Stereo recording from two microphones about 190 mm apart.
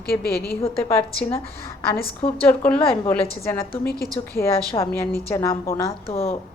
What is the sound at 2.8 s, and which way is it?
Speech, 25° left (ahead or behind).